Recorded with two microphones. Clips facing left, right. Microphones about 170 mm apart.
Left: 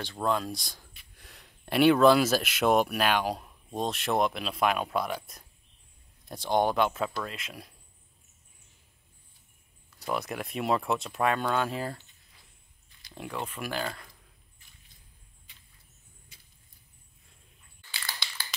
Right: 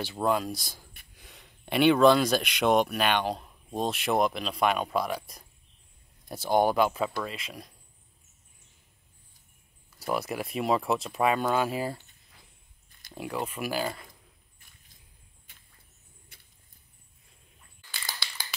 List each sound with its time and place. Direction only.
0.0 s speech: 5° right (ahead or behind)
9.9 s speech: 5° right (ahead or behind)
13.1 s speech: 5° right (ahead or behind)
16.3 s a sound: 55° right (ahead or behind)